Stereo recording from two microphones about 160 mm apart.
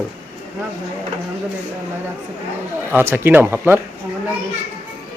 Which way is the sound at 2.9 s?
15° right (ahead or behind).